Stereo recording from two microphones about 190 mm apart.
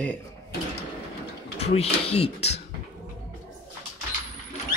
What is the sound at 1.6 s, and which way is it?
Speech, 30° left (ahead or behind).